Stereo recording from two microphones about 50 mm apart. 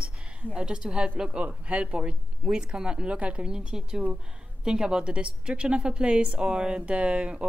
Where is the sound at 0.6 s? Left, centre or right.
Centre.